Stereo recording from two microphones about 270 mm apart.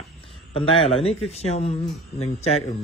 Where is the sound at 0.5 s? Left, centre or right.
Left.